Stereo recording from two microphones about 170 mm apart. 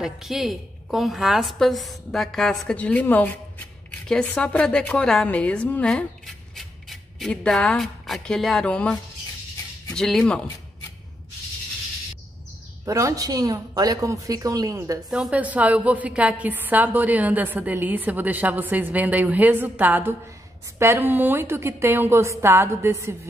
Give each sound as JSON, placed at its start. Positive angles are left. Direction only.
{"t": 0.0, "sound": "a woman's voice", "side_deg": -5}
{"t": 9.9, "sound": "a woman's voice", "side_deg": 5}
{"t": 12.8, "sound": "speech", "side_deg": -20}
{"t": 15.0, "sound": "a woman's voice", "side_deg": -5}